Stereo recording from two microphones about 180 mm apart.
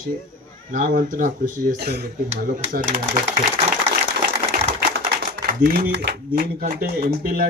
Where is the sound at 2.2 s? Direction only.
50° right (ahead or behind).